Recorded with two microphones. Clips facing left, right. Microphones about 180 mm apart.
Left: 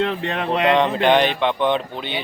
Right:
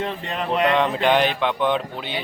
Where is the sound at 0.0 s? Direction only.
70° left (ahead or behind).